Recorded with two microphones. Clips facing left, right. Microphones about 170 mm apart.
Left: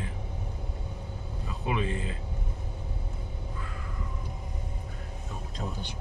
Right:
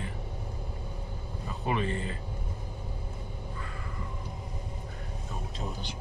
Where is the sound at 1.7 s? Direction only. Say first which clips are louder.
Even; 5° left (ahead or behind).